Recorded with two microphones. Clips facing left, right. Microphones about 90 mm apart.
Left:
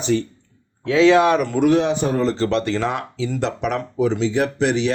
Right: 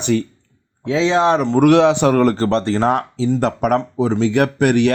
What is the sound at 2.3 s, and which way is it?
Speech, 40° right (ahead or behind).